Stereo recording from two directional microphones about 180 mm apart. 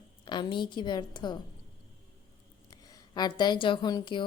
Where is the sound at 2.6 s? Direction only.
20° left (ahead or behind).